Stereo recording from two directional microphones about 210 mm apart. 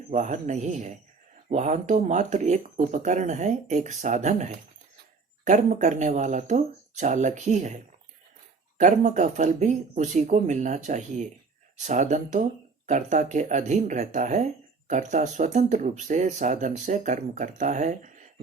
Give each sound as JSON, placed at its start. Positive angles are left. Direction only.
{"t": 0.1, "sound": "speech", "side_deg": -35}
{"t": 8.8, "sound": "speech", "side_deg": -35}